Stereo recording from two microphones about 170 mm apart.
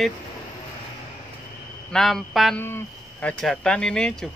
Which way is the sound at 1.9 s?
Centre (ahead or behind).